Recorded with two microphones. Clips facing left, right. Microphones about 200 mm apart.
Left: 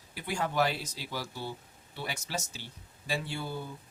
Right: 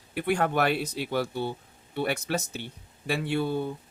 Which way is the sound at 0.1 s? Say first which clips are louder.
Right 8 dB; 60° right (ahead or behind).